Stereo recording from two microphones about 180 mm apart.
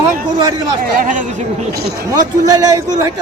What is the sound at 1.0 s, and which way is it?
Speech, 45° right (ahead or behind).